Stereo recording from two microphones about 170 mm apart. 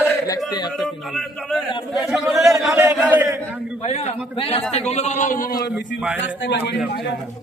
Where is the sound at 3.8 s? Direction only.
35° left (ahead or behind); by 5.7 s 55° left (ahead or behind).